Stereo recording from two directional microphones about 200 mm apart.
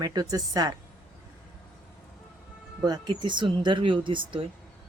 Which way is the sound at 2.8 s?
20° right (ahead or behind).